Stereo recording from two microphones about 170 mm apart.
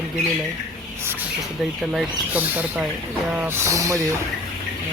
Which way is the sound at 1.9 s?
10° right (ahead or behind).